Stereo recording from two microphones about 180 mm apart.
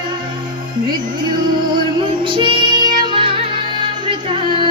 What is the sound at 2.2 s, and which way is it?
Music, 25° right (ahead or behind).